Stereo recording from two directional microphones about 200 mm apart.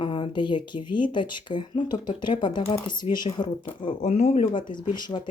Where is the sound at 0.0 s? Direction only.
25° left (ahead or behind).